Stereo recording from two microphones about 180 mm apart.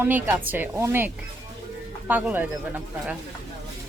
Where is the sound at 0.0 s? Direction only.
10° right (ahead or behind).